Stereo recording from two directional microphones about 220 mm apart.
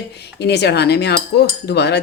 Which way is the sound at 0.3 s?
50° left (ahead or behind).